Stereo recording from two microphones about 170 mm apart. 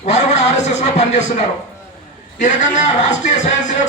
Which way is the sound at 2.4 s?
45° left (ahead or behind).